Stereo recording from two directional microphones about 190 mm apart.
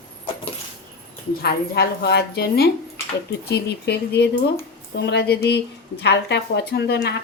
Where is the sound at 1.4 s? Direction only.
55° left (ahead or behind).